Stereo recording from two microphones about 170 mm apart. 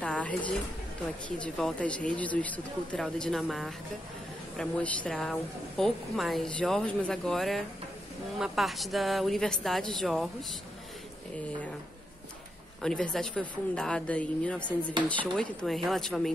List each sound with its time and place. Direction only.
0.0 s a sound: 5° left (ahead or behind)
1.4 s a woman's voice: 5° left (ahead or behind)
12.8 s a woman's voice: 5° left (ahead or behind)